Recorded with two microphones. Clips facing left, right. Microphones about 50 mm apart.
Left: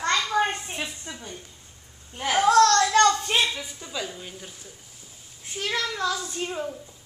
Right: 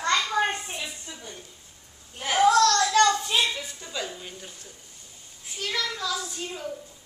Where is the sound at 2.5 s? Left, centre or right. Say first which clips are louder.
Left 6 dB; left.